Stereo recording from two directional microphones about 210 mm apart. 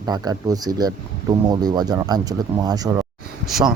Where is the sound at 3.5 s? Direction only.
Centre (ahead or behind).